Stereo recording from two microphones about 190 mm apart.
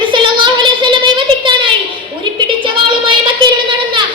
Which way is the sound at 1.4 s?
25° right (ahead or behind).